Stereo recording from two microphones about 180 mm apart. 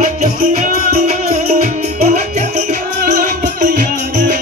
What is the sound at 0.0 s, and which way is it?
Music, 45° right (ahead or behind).